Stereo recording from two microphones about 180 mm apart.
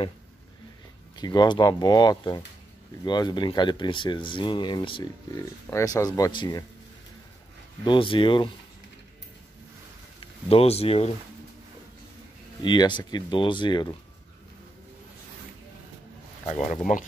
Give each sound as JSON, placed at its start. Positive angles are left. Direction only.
{"t": 1.1, "sound": "speech", "side_deg": 25}
{"t": 7.8, "sound": "speech", "side_deg": 25}
{"t": 10.2, "sound": "speech", "side_deg": 35}
{"t": 12.6, "sound": "speech", "side_deg": 25}
{"t": 16.6, "sound": "speech", "side_deg": 45}